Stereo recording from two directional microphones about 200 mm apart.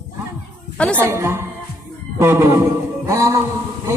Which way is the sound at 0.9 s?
15° right (ahead or behind).